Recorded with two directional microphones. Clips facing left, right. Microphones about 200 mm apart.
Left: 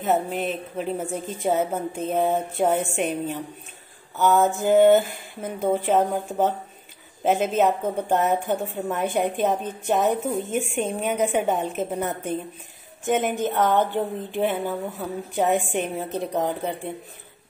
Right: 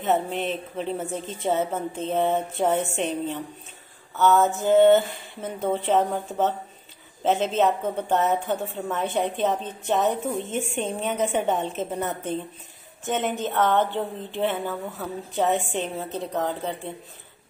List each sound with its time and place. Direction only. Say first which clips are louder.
0.0 s a woman's voice: left 1 dB; centre (ahead or behind)
10.3 s a woman's voice: left 3 dB; centre (ahead or behind); by 16.9 s 15° left (ahead or behind)